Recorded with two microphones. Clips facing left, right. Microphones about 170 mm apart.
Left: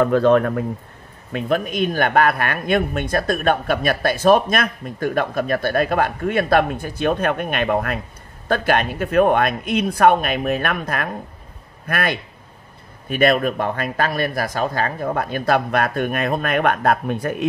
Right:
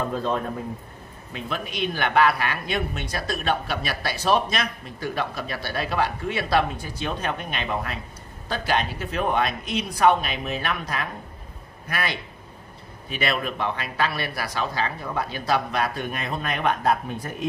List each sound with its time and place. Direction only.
0.0 s speech: 75° left (ahead or behind)
1.3 s speech: 50° left (ahead or behind)